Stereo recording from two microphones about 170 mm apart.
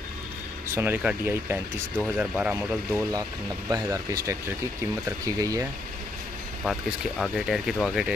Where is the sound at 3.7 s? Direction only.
20° right (ahead or behind).